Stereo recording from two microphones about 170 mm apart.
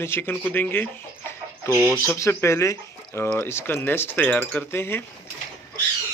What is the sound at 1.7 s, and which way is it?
Speech, 15° right (ahead or behind).